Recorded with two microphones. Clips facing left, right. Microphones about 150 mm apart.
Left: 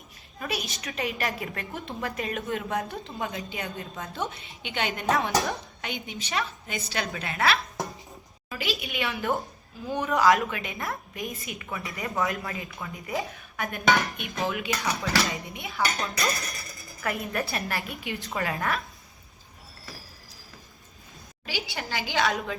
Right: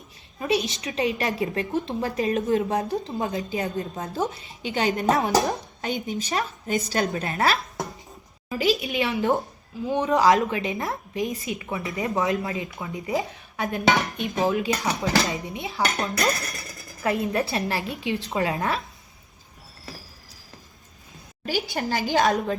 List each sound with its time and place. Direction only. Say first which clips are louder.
0.3 s a woman's voice: right 9 dB; 25° right (ahead or behind)
9.1 s a woman's voice: right 5 dB; 25° right (ahead or behind)
14.4 s a woman's voice: right 5 dB; 35° right (ahead or behind)
21.4 s speech: right 8 dB; 45° right (ahead or behind)